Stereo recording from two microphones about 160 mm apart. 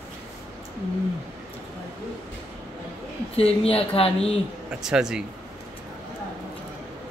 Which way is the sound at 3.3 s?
40° left (ahead or behind).